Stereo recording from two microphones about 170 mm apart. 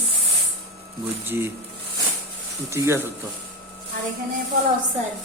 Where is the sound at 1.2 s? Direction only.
15° right (ahead or behind).